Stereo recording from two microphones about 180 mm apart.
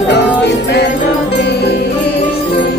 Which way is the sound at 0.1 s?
70° left (ahead or behind).